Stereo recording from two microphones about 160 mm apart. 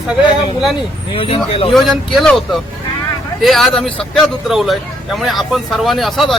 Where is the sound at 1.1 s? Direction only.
35° left (ahead or behind).